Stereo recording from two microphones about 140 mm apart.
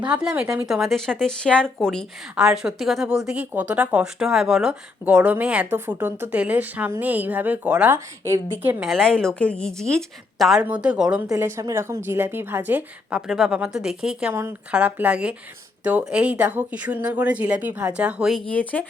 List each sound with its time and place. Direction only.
0.0 s speech: 5° right (ahead or behind)
8.8 s speech: centre (ahead or behind)
11.3 s a woman's voice: 20° right (ahead or behind); by 18.9 s 10° left (ahead or behind)